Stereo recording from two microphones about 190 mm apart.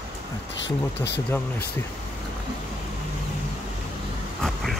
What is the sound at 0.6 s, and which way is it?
Speech, 65° left (ahead or behind).